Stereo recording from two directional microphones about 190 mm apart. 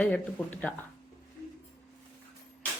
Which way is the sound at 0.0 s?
5° left (ahead or behind).